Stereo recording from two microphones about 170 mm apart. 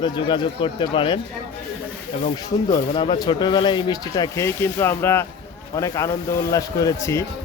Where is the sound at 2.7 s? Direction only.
30° left (ahead or behind).